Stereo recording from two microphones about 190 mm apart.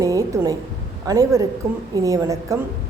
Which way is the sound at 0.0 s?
15° right (ahead or behind).